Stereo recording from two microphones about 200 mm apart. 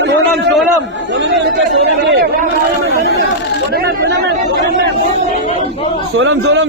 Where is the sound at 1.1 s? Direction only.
60° right (ahead or behind).